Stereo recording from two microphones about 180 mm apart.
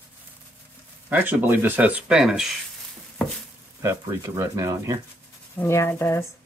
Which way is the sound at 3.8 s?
15° right (ahead or behind).